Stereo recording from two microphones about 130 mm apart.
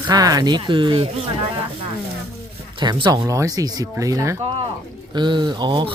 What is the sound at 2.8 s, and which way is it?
Speech, 35° right (ahead or behind).